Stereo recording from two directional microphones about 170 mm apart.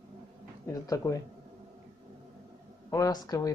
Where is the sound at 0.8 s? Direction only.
20° left (ahead or behind).